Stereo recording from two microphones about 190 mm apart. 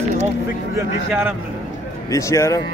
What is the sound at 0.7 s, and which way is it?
Speech, 10° right (ahead or behind).